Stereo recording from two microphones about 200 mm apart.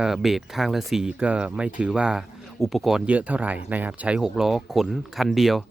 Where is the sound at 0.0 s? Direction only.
Centre (ahead or behind).